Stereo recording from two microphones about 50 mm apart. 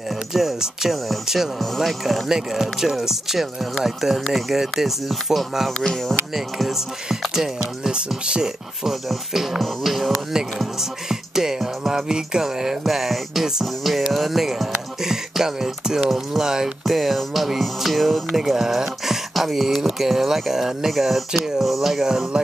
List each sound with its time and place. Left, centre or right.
0.3 s speech: centre
2.2 s speech: centre
5.8 s speech: centre
6.3 s speech: centre